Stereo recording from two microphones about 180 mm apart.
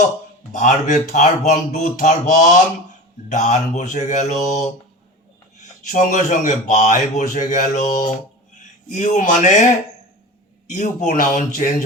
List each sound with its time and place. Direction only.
0.5 s a man's voice: 45° left (ahead or behind)
5.9 s a man's voice: 45° left (ahead or behind)
10.7 s a man's voice: 45° left (ahead or behind)